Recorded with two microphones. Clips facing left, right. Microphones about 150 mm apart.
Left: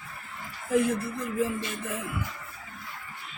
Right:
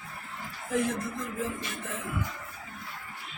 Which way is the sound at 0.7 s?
10° left (ahead or behind).